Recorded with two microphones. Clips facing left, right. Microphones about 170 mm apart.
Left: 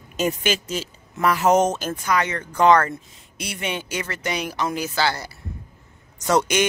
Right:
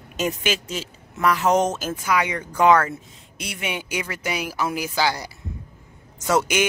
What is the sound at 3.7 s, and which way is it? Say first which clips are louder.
A woman's voice: even; 10° right (ahead or behind).